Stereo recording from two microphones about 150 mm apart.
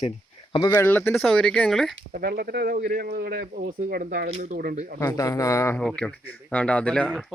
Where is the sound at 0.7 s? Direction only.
10° left (ahead or behind).